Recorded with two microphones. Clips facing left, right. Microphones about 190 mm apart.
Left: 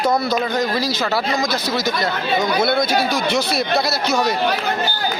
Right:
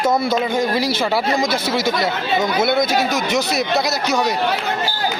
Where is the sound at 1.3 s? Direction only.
25° right (ahead or behind).